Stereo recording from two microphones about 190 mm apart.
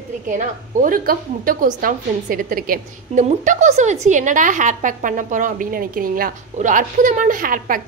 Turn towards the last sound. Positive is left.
turn(degrees=-45)  # may be behind; listen again after turning